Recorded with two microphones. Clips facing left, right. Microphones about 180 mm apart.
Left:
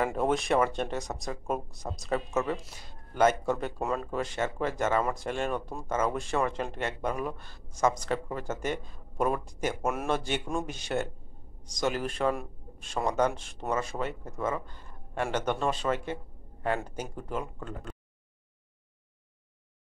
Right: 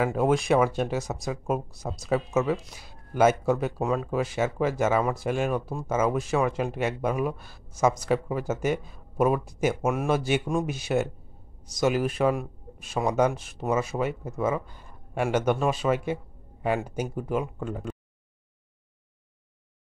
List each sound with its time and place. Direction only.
0.0 s speech: centre (ahead or behind)